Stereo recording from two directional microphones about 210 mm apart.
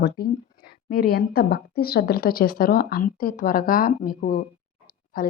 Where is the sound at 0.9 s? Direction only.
45° left (ahead or behind).